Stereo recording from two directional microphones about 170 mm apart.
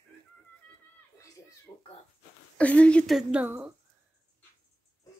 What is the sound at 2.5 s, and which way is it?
A woman's voice, 5° left (ahead or behind).